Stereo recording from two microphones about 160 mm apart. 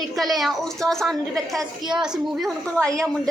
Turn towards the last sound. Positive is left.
turn(degrees=-20)  # may be behind; listen again after turning